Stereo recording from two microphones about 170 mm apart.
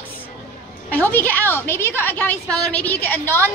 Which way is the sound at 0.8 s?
10° left (ahead or behind).